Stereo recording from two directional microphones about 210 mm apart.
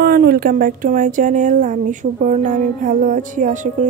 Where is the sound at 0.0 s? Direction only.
45° right (ahead or behind).